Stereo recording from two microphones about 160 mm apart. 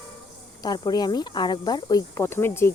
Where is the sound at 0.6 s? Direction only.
25° left (ahead or behind).